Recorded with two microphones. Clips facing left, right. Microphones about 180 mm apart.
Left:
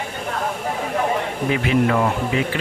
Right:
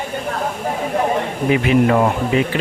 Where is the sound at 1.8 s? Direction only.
30° right (ahead or behind).